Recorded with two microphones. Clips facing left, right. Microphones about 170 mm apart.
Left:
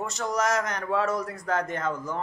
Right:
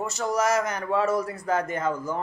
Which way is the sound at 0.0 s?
5° right (ahead or behind).